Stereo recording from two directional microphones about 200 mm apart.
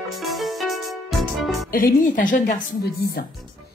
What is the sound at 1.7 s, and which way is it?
A woman's voice, 45° left (ahead or behind).